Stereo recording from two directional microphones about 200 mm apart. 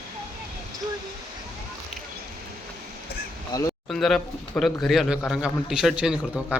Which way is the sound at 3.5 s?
20° left (ahead or behind).